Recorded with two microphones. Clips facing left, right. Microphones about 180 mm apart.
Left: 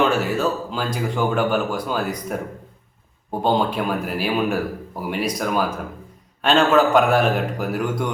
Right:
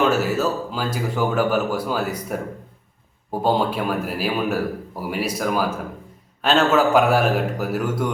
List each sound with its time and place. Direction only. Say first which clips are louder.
0.0 s a man's voice: even; 5° right (ahead or behind)